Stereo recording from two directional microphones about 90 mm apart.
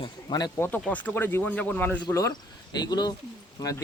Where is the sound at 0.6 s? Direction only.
25° left (ahead or behind).